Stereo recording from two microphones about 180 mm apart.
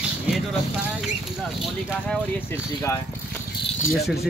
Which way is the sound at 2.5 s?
15° left (ahead or behind).